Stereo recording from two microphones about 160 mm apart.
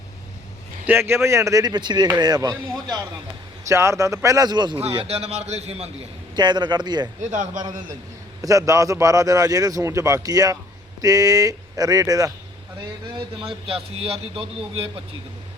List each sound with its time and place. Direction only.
0.9 s a man's voice: 15° right (ahead or behind)
4.8 s a man's voice: 40° right (ahead or behind)
6.3 s a man's voice: 30° right (ahead or behind)
7.3 s a man's voice: 50° right (ahead or behind)
8.4 s a man's voice: 20° right (ahead or behind)
13.1 s a man's voice: 35° right (ahead or behind)